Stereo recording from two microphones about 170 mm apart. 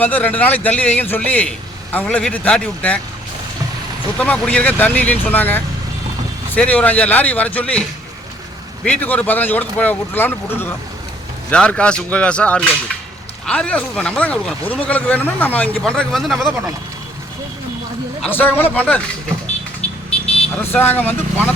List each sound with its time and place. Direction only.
0.0 s speech: 10° left (ahead or behind)
4.2 s speech: 5° left (ahead or behind)
18.2 s speech: 10° left (ahead or behind)
19.8 s vehicle: 40° left (ahead or behind)
20.7 s speech: 10° left (ahead or behind)